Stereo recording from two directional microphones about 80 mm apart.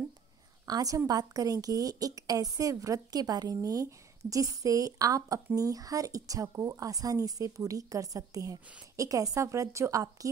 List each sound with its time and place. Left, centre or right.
0.7 s a woman's voice: right